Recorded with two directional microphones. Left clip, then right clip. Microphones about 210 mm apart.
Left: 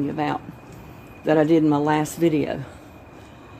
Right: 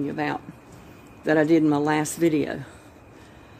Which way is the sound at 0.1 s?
15° right (ahead or behind).